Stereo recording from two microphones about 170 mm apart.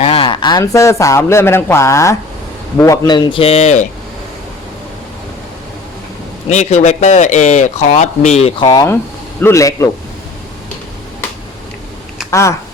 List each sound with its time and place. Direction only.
0.0 s a man's voice: 35° left (ahead or behind)
6.5 s speech: 45° left (ahead or behind)
8.7 s a man's voice: 20° left (ahead or behind)
12.3 s speech: 15° left (ahead or behind)